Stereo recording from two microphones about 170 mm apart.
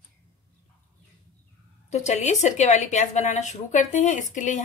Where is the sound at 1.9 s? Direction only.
40° left (ahead or behind).